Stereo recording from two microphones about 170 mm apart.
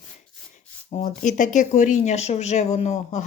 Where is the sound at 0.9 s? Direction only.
50° left (ahead or behind).